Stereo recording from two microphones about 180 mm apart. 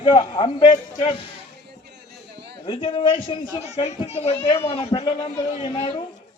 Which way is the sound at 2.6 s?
30° left (ahead or behind).